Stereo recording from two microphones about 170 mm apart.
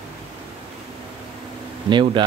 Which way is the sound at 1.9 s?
30° right (ahead or behind).